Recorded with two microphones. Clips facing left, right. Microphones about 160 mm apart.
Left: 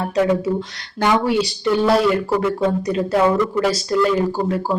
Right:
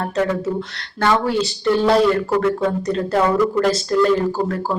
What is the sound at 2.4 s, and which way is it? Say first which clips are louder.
Speech: even; 15° left (ahead or behind).